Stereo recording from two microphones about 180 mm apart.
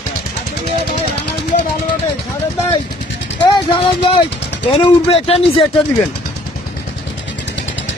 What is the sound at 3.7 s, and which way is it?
Speech, 25° left (ahead or behind).